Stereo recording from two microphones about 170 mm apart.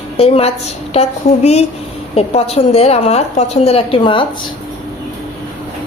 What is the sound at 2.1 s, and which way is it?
A woman's voice, 35° left (ahead or behind).